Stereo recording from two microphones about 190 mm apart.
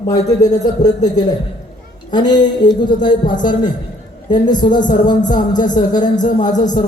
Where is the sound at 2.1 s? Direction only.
20° left (ahead or behind).